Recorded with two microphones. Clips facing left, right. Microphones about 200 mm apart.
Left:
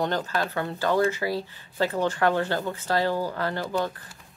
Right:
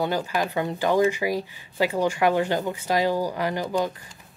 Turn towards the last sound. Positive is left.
turn(degrees=-15)  # may be behind; listen again after turning